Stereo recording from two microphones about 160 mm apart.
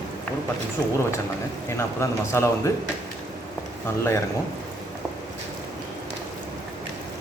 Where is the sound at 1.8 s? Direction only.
15° left (ahead or behind).